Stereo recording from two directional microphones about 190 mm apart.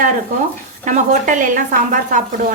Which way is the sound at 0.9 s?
45° right (ahead or behind).